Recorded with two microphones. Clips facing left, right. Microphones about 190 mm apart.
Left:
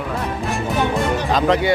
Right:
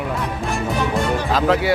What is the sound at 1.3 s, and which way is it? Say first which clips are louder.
Speech: left 1 dB; 5° right (ahead or behind).